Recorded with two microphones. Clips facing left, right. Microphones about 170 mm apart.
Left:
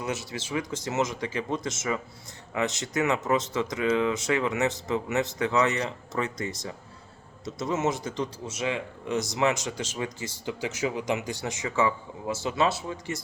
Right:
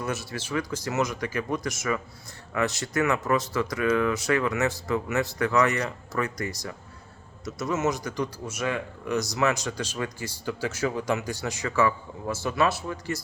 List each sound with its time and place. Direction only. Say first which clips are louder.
0.0 s speech: right 1 dB; 20° left (ahead or behind)